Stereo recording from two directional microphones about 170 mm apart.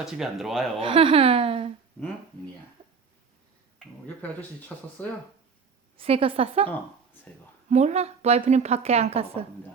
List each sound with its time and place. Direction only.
0.0 s speech: centre (ahead or behind)
0.8 s a woman's voice: 30° right (ahead or behind)
4.0 s speech: 10° left (ahead or behind)
6.0 s a woman's voice: 35° right (ahead or behind)
7.7 s a woman's voice: 40° right (ahead or behind)